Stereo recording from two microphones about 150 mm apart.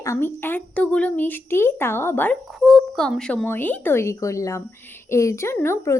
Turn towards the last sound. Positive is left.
turn(degrees=20)  # may be behind; listen again after turning